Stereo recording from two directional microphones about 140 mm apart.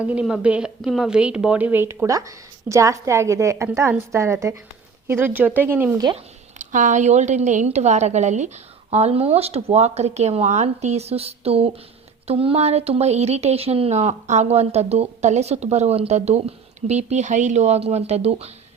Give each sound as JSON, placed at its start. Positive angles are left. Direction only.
{"t": 0.0, "sound": "a woman's voice", "side_deg": -10}
{"t": 6.1, "sound": "a woman's voice", "side_deg": -60}